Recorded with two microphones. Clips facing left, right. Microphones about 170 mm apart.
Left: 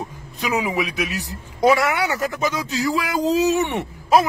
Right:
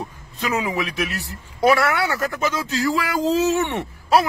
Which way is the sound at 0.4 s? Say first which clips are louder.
Left 1 dB; 15° left (ahead or behind).